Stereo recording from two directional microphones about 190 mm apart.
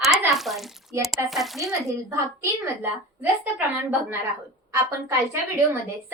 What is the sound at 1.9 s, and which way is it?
Speech, 15° right (ahead or behind).